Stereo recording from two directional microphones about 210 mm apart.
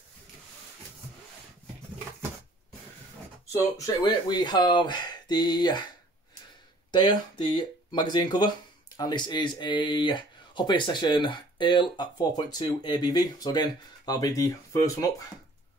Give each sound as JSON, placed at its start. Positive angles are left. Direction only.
{"t": 3.5, "sound": "speech", "side_deg": 15}
{"t": 6.9, "sound": "speech", "side_deg": 20}